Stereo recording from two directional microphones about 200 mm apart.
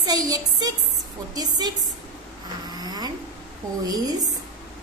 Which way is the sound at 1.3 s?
20° right (ahead or behind).